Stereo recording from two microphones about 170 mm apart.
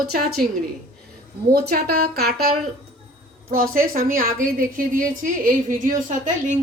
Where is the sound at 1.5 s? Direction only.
65° right (ahead or behind).